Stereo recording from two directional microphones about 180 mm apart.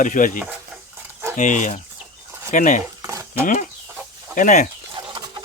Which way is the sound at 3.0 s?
15° right (ahead or behind).